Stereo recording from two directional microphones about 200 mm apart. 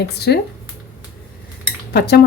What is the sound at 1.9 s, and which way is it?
Speech, 50° left (ahead or behind).